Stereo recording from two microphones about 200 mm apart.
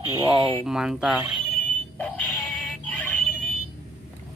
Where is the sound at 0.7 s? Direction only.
5° right (ahead or behind).